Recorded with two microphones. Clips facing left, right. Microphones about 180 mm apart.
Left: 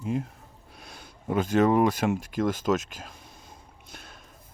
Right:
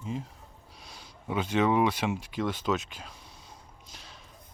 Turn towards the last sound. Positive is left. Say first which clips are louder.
# left 3 dB
turn(degrees=55)  # may be behind; listen again after turning